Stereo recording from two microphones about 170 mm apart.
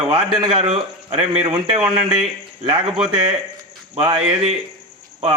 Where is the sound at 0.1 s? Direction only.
30° right (ahead or behind).